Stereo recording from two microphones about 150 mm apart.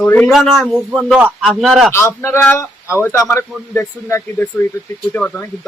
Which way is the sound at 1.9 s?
15° left (ahead or behind).